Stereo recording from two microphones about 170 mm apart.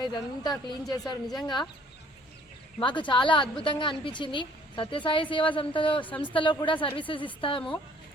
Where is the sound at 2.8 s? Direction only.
30° left (ahead or behind).